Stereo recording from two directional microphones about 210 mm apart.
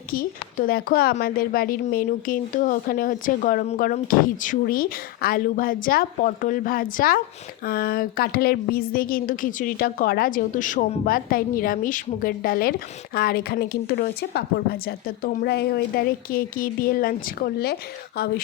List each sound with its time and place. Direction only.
0.1 s a woman's voice: 45° left (ahead or behind)